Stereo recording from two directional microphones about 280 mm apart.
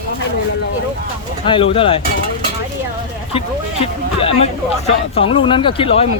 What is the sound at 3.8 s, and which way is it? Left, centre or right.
Speech, left.